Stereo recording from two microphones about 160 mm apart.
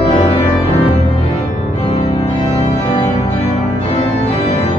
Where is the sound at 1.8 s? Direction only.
35° left (ahead or behind).